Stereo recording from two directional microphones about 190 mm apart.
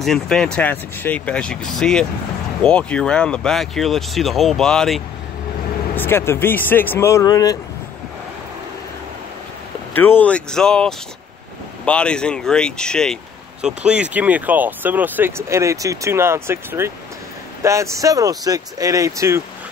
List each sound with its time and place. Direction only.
0.0 s speech: centre (ahead or behind)
5.9 s speech: 10° left (ahead or behind)
9.9 s speech: 10° left (ahead or behind); by 19.4 s 15° right (ahead or behind)